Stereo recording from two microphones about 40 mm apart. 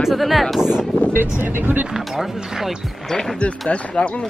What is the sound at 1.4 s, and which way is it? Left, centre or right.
Speech, right.